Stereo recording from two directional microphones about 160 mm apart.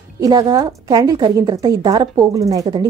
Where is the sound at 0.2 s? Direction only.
25° right (ahead or behind).